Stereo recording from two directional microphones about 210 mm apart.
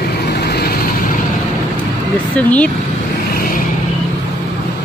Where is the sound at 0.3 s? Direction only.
50° left (ahead or behind).